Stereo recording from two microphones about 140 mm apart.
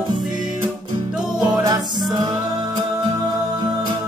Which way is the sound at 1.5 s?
30° right (ahead or behind).